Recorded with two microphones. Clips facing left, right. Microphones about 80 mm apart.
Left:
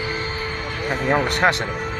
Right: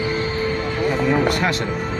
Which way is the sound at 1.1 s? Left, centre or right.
Left.